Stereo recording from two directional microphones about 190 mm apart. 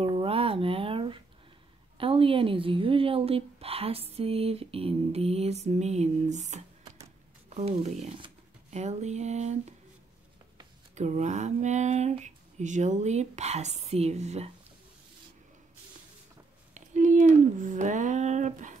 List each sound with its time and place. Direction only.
0.0 s a sound: 30° right (ahead or behind)
2.0 s a woman's voice: 30° right (ahead or behind)
11.0 s a woman's voice: 40° right (ahead or behind)
16.7 s speech: 40° right (ahead or behind)